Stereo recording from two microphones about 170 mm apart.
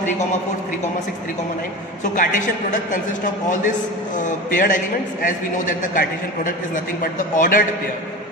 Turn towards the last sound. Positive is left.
turn(degrees=50)  # may be behind; listen again after turning